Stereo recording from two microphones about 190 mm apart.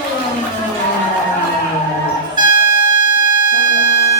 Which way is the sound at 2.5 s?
45° left (ahead or behind).